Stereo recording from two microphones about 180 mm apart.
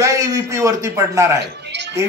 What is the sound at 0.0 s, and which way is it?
A man's voice, 20° right (ahead or behind).